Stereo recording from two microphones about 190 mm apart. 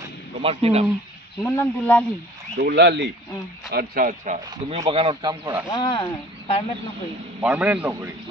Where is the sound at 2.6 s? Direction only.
65° right (ahead or behind).